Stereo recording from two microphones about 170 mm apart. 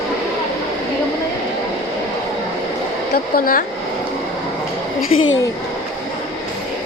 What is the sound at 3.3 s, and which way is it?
Speech, 55° left (ahead or behind).